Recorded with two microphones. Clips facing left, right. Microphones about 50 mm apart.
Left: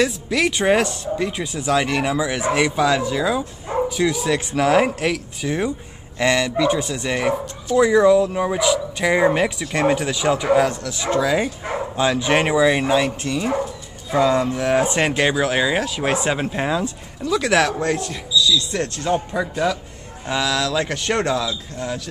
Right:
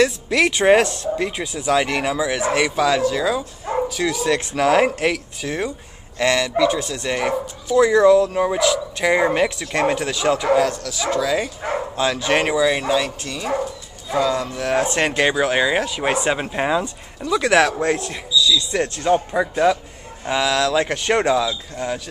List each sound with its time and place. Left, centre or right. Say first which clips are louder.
0.0 s speech: right 2 dB; centre
7.2 s speech: left 1 dB; centre
10.7 s speech: even; left
14.7 s speech: right 1 dB; centre; by 19.8 s right
20.2 s speech: right 2 dB; centre